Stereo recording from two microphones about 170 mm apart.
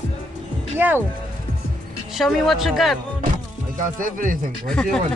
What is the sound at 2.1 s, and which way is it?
Speech, centre (ahead or behind).